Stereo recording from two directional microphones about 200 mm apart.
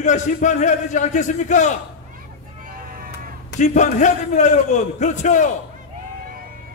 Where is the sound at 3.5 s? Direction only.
35° left (ahead or behind).